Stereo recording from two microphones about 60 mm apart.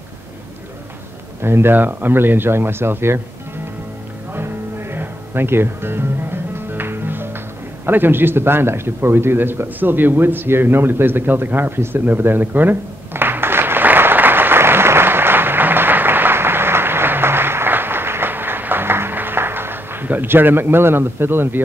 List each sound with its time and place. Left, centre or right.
1.4 s speech: right
4.3 s music: right
7.8 s a sound: right